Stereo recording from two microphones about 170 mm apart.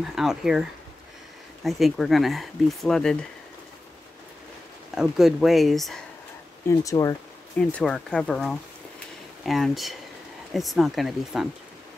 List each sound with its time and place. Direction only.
0.1 s speech: centre (ahead or behind)
4.9 s speech: centre (ahead or behind)
6.7 s speech: 20° left (ahead or behind)
7.7 s speech: 5° left (ahead or behind)